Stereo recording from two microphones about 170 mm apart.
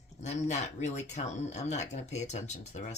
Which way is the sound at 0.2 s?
45° left (ahead or behind).